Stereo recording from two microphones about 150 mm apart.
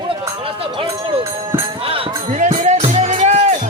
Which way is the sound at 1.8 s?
40° right (ahead or behind).